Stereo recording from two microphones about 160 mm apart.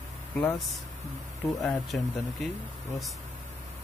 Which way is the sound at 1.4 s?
5° left (ahead or behind).